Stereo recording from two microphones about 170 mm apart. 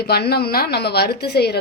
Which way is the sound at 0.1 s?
70° left (ahead or behind).